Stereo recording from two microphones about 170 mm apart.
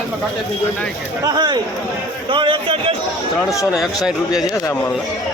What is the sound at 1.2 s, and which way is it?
Speech, 25° right (ahead or behind).